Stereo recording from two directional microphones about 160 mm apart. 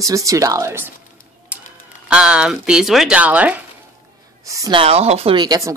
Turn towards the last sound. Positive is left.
turn(degrees=-25)  # may be behind; listen again after turning